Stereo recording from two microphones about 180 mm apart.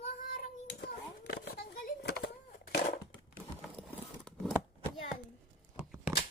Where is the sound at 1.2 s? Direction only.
65° left (ahead or behind).